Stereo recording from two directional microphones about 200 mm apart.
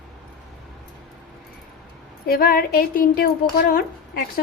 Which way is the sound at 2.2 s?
50° left (ahead or behind).